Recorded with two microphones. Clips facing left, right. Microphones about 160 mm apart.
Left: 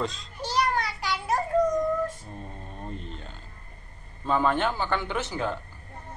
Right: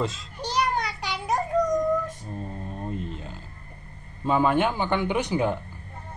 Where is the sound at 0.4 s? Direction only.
20° right (ahead or behind).